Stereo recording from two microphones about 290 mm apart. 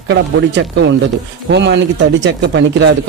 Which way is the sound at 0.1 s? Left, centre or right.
Right.